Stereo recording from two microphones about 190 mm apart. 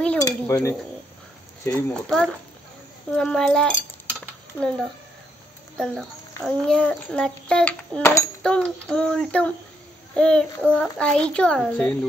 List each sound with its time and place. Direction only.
0.2 s dishes: 15° left (ahead or behind)
1.6 s a child's voice: 10° left (ahead or behind)